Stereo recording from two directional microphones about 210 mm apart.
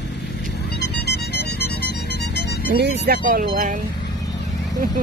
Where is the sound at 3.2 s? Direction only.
40° right (ahead or behind).